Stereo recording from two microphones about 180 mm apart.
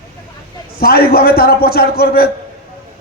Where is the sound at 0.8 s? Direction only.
55° left (ahead or behind).